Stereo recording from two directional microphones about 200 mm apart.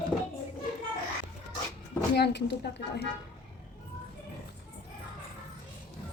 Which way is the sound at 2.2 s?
60° left (ahead or behind).